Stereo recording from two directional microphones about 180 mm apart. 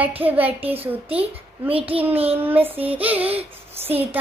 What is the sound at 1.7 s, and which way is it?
Speech, 30° right (ahead or behind).